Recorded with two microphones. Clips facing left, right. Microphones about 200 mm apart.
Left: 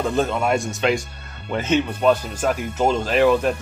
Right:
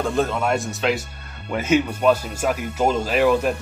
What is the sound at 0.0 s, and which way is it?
Speech, centre (ahead or behind).